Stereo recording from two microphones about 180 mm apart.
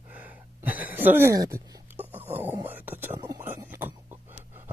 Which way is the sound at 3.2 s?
15° right (ahead or behind).